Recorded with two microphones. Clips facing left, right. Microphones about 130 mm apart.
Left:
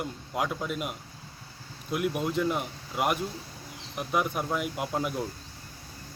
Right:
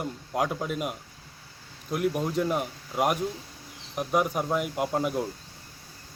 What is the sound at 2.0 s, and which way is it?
Speech, 5° left (ahead or behind).